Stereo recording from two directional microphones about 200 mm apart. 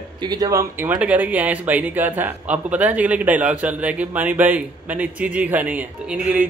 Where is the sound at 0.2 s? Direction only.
20° right (ahead or behind).